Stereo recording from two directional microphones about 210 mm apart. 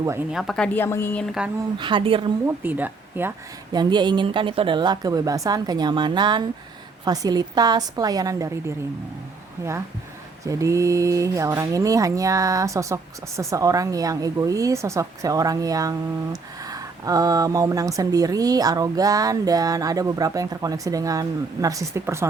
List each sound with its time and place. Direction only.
0.0 s speech: 10° right (ahead or behind); by 1.2 s 10° left (ahead or behind)
1.8 s speech: 25° right (ahead or behind)
2.5 s speech: 10° right (ahead or behind)
10.4 s speech: 15° right (ahead or behind)